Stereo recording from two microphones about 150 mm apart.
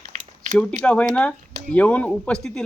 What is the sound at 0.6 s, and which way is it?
A man's voice, 10° left (ahead or behind).